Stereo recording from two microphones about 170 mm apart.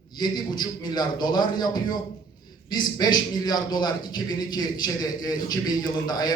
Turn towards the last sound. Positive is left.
turn(degrees=25)  # may be behind; listen again after turning